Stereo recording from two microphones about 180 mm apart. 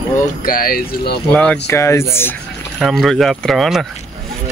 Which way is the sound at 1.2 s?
5° left (ahead or behind).